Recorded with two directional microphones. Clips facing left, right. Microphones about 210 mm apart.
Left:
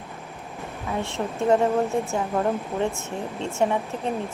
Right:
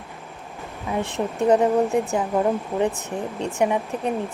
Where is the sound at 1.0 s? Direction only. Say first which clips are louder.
Right 3 dB; 15° right (ahead or behind).